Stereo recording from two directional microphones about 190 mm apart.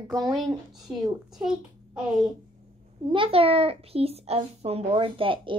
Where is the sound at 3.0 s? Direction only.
25° right (ahead or behind).